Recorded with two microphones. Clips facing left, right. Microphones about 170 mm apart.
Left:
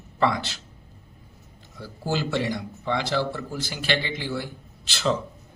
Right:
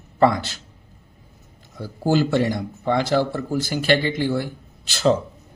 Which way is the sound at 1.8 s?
50° right (ahead or behind).